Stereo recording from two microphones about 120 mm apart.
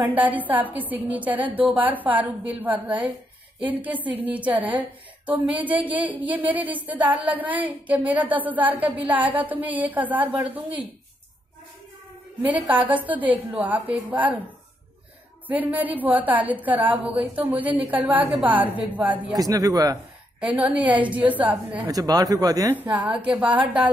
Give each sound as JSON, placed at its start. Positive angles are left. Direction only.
{"t": 0.0, "sound": "a woman's voice", "side_deg": -15}
{"t": 12.4, "sound": "a woman's voice", "side_deg": -15}
{"t": 15.4, "sound": "a woman's voice", "side_deg": -15}
{"t": 19.3, "sound": "speech", "side_deg": -30}
{"t": 20.3, "sound": "a woman's voice", "side_deg": -10}
{"t": 21.8, "sound": "speech", "side_deg": -30}
{"t": 23.0, "sound": "a woman's voice", "side_deg": -5}